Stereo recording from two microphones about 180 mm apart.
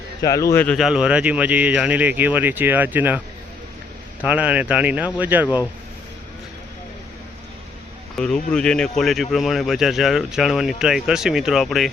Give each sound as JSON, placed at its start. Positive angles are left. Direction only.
{"t": 0.2, "sound": "a man's voice", "side_deg": 20}
{"t": 0.5, "sound": "speech", "side_deg": 5}
{"t": 4.2, "sound": "speech", "side_deg": -5}
{"t": 8.1, "sound": "speech", "side_deg": 5}